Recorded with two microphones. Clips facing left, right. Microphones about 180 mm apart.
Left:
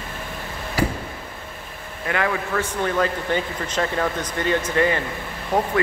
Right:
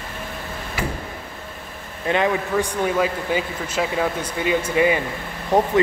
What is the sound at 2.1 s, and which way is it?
A man's voice, 15° right (ahead or behind).